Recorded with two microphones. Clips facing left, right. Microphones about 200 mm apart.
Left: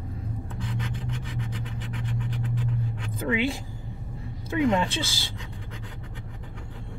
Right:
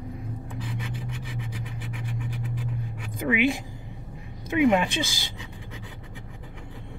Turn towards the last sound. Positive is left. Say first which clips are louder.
# right 1 dB
turn(degrees=-15)  # may be behind; listen again after turning